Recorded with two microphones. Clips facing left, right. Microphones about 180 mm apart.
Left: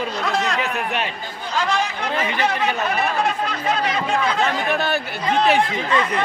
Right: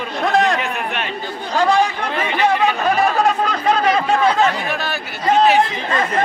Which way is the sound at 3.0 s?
35° right (ahead or behind).